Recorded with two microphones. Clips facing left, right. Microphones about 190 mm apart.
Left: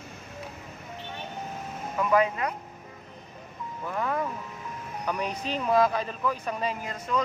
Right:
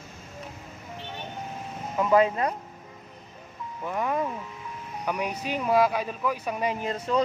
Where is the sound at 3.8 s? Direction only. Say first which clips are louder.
Right 2 dB; 15° right (ahead or behind).